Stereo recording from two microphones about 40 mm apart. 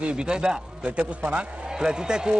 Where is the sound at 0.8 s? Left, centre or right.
Right.